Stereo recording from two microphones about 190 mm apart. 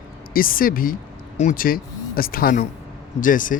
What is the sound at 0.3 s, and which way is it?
Speech, 50° left (ahead or behind).